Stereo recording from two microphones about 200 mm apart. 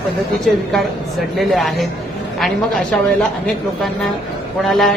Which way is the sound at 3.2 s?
5° left (ahead or behind).